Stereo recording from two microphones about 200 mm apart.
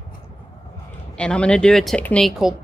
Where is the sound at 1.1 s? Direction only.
5° left (ahead or behind).